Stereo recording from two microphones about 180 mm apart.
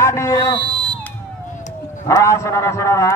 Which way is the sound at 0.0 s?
15° left (ahead or behind).